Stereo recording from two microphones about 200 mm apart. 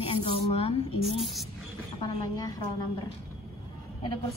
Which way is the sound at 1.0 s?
Centre (ahead or behind).